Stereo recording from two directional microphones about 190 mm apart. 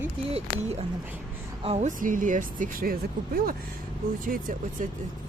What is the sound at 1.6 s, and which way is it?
Speech, 35° right (ahead or behind).